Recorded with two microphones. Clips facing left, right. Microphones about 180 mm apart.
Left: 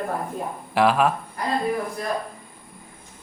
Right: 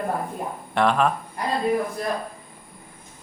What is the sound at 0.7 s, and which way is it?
Speech, 5° left (ahead or behind).